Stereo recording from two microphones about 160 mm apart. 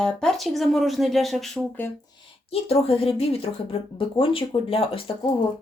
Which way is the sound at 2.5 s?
40° left (ahead or behind).